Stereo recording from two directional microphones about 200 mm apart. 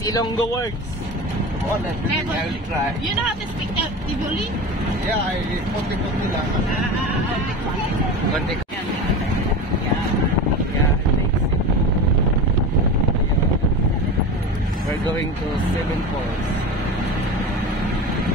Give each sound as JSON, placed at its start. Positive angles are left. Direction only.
{"t": 0.0, "sound": "speech", "side_deg": 15}